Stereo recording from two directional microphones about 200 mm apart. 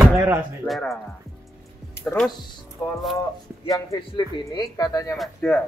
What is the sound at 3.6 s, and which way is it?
Speech, 15° left (ahead or behind).